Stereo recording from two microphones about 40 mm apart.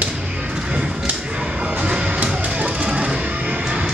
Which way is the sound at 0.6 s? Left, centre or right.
Right.